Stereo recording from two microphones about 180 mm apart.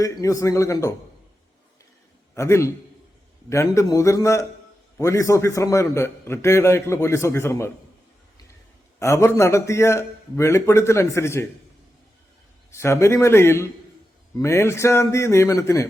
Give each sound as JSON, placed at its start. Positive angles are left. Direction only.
{"t": 0.0, "sound": "a man's voice", "side_deg": 20}
{"t": 2.3, "sound": "a man's voice", "side_deg": 15}
{"t": 9.0, "sound": "a man's voice", "side_deg": 15}
{"t": 12.7, "sound": "a man's voice", "side_deg": 15}